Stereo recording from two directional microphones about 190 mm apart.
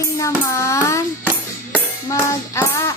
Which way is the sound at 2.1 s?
15° left (ahead or behind).